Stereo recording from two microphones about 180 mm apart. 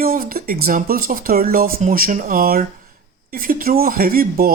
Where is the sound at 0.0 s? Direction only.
55° right (ahead or behind).